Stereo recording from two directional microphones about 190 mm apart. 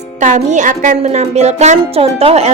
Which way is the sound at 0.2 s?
40° right (ahead or behind).